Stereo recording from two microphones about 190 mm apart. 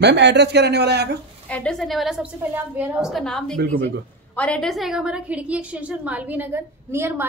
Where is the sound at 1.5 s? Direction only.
5° left (ahead or behind).